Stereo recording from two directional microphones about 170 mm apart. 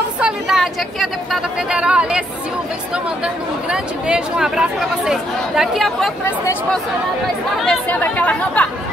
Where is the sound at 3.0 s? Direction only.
5° right (ahead or behind).